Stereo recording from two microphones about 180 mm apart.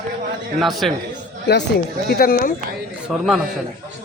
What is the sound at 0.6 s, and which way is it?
Speech, centre (ahead or behind).